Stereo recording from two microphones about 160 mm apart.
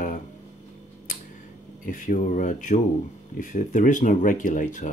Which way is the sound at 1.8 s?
55° left (ahead or behind).